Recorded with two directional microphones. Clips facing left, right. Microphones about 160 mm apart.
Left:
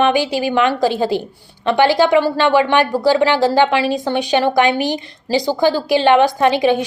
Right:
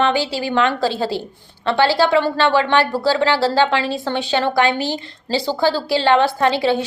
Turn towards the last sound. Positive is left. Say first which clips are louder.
# left 3 dB
turn(degrees=15)  # may be behind; listen again after turning